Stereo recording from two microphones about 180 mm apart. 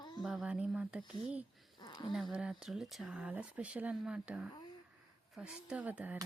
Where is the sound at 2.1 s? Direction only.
Centre (ahead or behind).